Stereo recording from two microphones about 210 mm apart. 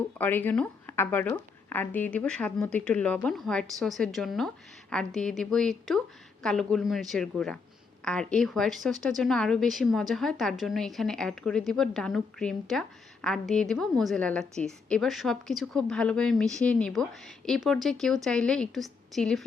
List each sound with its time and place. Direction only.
0.2 s a woman's voice: 10° left (ahead or behind)